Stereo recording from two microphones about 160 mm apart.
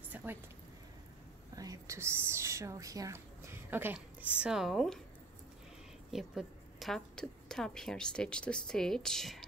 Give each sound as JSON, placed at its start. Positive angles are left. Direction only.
{"t": 0.1, "sound": "a sound", "side_deg": -10}
{"t": 1.5, "sound": "a woman's voice", "side_deg": -20}
{"t": 6.1, "sound": "a woman's voice", "side_deg": 0}